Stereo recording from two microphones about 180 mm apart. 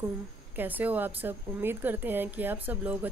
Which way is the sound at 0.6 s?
10° right (ahead or behind).